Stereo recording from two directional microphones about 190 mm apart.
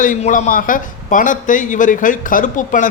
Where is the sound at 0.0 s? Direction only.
40° left (ahead or behind).